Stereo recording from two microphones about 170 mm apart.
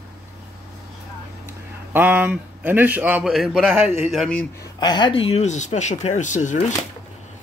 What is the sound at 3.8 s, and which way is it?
Speech, 15° right (ahead or behind).